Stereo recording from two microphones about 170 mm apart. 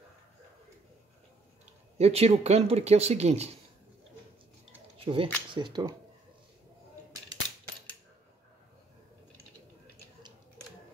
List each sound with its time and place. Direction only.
2.0 s speech: 35° right (ahead or behind)
4.9 s speech: 30° right (ahead or behind)